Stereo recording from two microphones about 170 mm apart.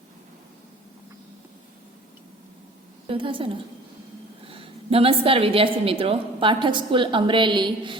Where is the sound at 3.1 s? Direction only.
30° right (ahead or behind).